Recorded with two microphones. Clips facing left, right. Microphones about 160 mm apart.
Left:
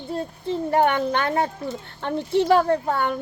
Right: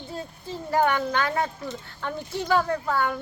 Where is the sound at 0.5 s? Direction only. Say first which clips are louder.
Left 3 dB; 25° left (ahead or behind).